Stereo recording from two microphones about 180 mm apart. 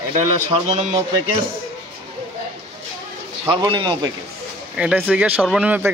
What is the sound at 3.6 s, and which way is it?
Speech, 25° right (ahead or behind).